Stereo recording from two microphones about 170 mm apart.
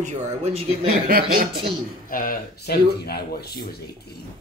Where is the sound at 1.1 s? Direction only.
60° right (ahead or behind).